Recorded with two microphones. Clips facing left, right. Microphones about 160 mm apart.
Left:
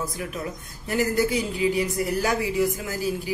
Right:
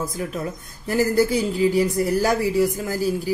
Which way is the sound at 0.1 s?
35° right (ahead or behind).